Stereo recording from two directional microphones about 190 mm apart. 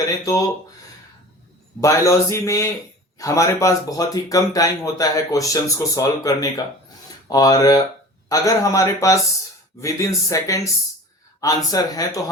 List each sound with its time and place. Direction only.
0.0 s speech: 20° left (ahead or behind)
1.8 s speech: 15° left (ahead or behind)